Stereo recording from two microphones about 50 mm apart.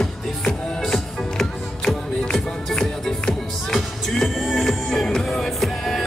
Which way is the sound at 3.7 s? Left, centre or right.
Centre.